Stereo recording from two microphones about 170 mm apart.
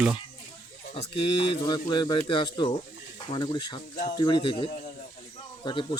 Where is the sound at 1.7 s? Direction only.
25° left (ahead or behind).